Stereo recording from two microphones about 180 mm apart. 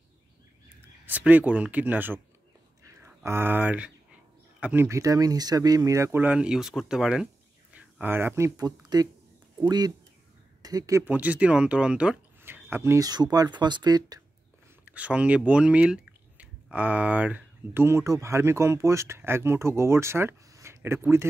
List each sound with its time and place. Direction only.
1.0 s speech: 10° right (ahead or behind)
2.8 s a sound: 15° right (ahead or behind)
3.3 s speech: 10° right (ahead or behind)
14.9 s speech: 5° right (ahead or behind)